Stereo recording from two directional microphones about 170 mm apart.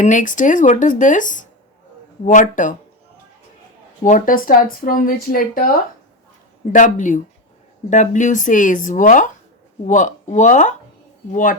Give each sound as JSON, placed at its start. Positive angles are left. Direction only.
{"t": 0.0, "sound": "speech", "side_deg": 50}
{"t": 4.0, "sound": "speech", "side_deg": 50}
{"t": 6.7, "sound": "speech", "side_deg": 50}